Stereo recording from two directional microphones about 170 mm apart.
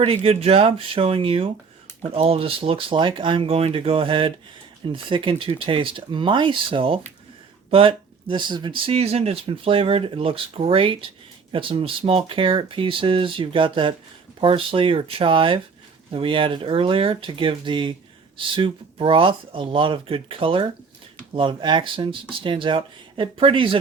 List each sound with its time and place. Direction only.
0.0 s speech: 35° right (ahead or behind)